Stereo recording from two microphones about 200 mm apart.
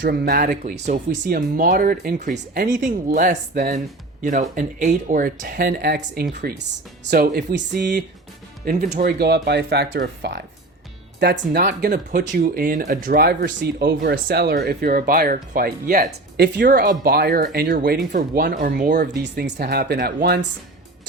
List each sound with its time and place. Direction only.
0.0 s speech: 50° right (ahead or behind)
2.3 s speech: 60° right (ahead or behind)
2.7 s speech: 40° right (ahead or behind)
8.6 s speech: 45° right (ahead or behind)
19.2 s speech: 55° right (ahead or behind)